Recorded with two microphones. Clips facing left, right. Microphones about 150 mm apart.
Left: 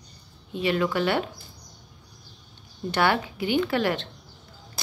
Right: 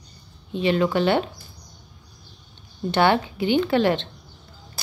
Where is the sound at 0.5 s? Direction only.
25° right (ahead or behind).